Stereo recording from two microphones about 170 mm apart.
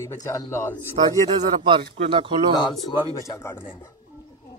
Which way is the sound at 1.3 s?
30° right (ahead or behind).